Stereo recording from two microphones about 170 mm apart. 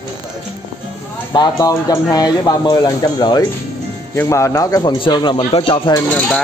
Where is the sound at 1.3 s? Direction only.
25° left (ahead or behind).